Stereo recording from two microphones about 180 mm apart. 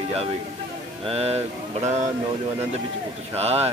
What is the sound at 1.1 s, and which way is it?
Speech, 35° right (ahead or behind).